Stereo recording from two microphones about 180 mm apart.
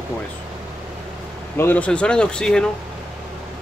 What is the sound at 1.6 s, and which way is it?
Speech, 10° left (ahead or behind).